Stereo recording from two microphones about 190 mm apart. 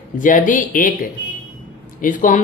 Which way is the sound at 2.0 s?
45° left (ahead or behind).